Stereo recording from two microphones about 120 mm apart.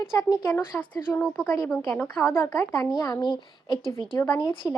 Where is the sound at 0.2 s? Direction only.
35° left (ahead or behind).